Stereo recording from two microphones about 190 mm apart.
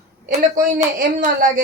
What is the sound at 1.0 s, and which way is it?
Speech, 45° right (ahead or behind).